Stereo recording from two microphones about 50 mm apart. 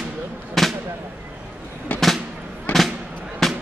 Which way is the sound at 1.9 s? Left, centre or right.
Left.